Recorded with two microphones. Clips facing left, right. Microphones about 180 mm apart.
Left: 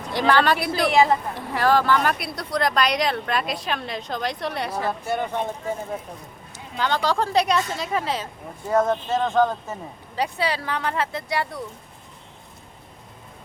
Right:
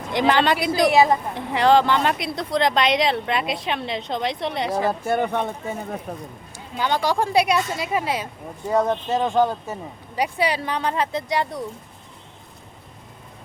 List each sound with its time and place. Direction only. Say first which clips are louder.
0.1 s speech: right 1 dB; 20° right (ahead or behind)
4.9 s speech: right 4 dB; 50° right (ahead or behind)
6.5 s speech: right 1 dB; 15° right (ahead or behind)